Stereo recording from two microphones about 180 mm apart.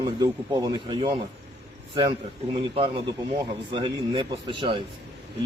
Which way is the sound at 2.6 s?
30° right (ahead or behind).